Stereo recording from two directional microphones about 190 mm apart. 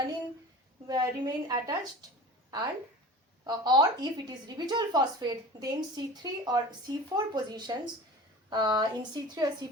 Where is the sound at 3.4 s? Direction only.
20° right (ahead or behind).